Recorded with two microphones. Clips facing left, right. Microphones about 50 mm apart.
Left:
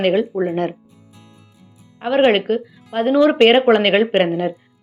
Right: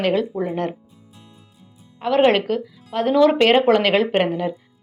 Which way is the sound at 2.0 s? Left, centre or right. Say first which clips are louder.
Left 1 dB; centre.